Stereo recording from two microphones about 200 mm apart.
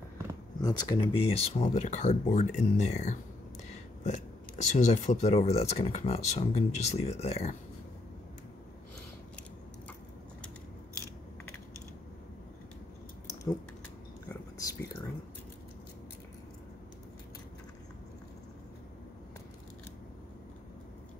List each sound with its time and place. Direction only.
0.6 s speech: 20° left (ahead or behind)
14.3 s whispering: 15° left (ahead or behind)